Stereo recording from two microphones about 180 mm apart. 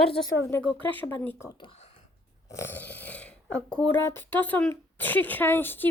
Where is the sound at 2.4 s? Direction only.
15° left (ahead or behind).